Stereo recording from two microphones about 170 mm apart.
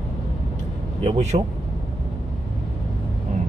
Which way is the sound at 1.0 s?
35° right (ahead or behind).